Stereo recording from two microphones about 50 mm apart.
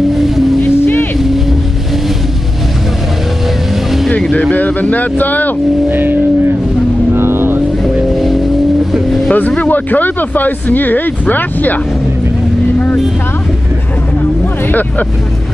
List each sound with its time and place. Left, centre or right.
0.1 s vehicle: centre
0.7 s vehicle: left
4.4 s speech: left
5.9 s speech: right
7.2 s vehicle: right
7.8 s vehicle: centre
9.6 s speech: left
14.7 s speech: left